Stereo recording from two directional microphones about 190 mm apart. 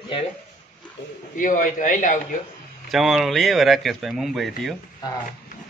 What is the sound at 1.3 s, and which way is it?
Speech, 45° left (ahead or behind).